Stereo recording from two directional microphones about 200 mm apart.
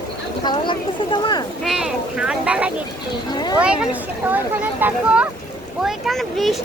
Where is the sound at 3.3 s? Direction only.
20° left (ahead or behind).